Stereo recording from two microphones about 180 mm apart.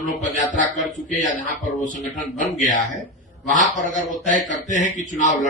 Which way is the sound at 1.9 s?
45° left (ahead or behind).